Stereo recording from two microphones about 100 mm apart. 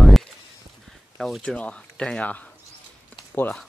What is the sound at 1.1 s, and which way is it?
Speech, centre (ahead or behind).